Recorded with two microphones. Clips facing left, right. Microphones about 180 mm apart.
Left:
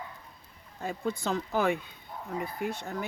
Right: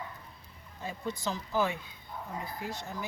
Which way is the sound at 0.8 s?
55° left (ahead or behind).